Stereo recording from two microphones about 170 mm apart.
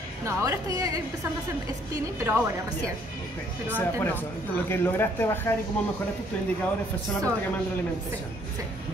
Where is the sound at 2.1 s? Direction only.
15° right (ahead or behind).